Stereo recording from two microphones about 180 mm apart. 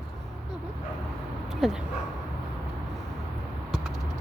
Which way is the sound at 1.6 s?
Centre (ahead or behind).